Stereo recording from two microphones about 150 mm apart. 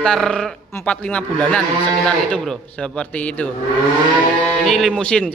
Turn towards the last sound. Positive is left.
turn(degrees=5)  # may be behind; listen again after turning